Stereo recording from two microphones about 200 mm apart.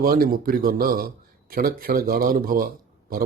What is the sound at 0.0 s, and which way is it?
Speech, 50° right (ahead or behind).